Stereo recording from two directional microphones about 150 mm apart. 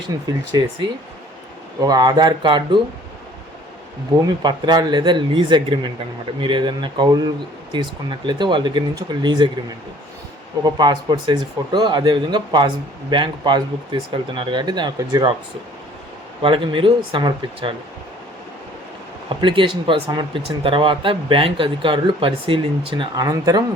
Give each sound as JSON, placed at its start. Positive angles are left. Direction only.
{"t": 0.1, "sound": "speech", "side_deg": -25}
{"t": 4.3, "sound": "speech", "side_deg": -30}
{"t": 10.6, "sound": "speech", "side_deg": -30}
{"t": 16.4, "sound": "speech", "side_deg": -35}
{"t": 19.3, "sound": "speech", "side_deg": -35}